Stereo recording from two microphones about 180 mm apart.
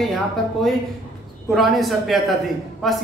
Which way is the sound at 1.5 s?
Centre (ahead or behind).